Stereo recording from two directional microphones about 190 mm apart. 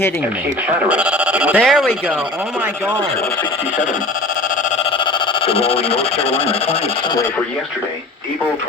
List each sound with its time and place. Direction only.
0.9 s speech: 5° right (ahead or behind)
4.8 s speech: 30° left (ahead or behind)